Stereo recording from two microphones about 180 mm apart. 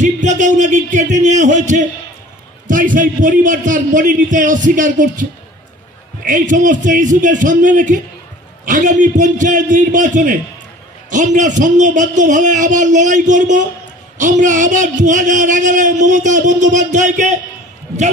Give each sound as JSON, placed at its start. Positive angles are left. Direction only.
{"t": 0.0, "sound": "speech", "side_deg": -45}
{"t": 6.2, "sound": "speech", "side_deg": -45}